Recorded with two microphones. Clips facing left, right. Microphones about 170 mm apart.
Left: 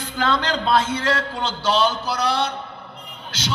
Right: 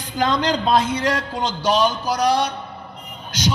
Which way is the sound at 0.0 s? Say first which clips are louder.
Right 2 dB; 15° right (ahead or behind).